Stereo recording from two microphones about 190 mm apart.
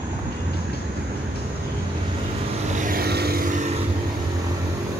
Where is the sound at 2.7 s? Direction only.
45° right (ahead or behind).